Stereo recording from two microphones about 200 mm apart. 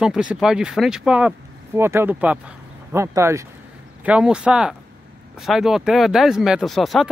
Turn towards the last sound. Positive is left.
turn(degrees=0)  # may be behind; listen again after turning